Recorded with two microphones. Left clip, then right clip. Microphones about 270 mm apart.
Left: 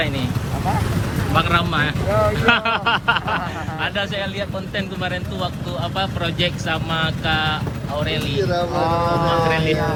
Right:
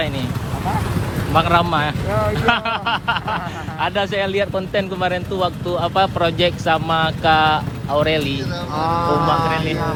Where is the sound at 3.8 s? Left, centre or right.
Centre.